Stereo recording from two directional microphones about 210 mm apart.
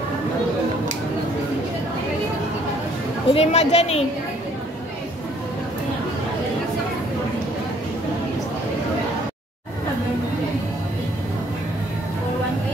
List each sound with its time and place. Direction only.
3.3 s a woman's voice: 30° left (ahead or behind)